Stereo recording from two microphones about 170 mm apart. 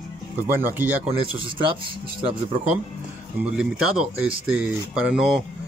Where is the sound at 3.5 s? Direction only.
5° right (ahead or behind).